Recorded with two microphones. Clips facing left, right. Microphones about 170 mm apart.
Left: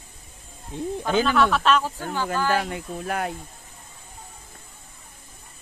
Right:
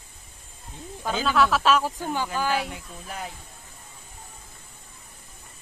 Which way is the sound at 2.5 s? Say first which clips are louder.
Left 3 dB; 65° left (ahead or behind).